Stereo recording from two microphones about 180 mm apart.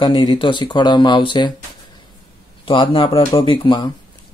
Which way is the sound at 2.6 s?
30° left (ahead or behind).